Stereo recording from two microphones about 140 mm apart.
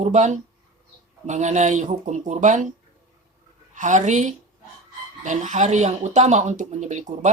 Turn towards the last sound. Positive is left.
turn(degrees=-55)  # may be behind; listen again after turning